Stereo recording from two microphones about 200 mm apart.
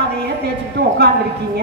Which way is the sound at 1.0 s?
50° right (ahead or behind).